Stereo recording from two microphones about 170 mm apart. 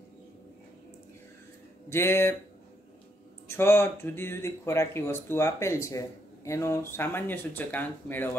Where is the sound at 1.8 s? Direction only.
15° left (ahead or behind).